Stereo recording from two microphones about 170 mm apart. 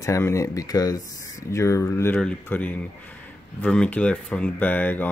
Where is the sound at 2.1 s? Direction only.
5° left (ahead or behind).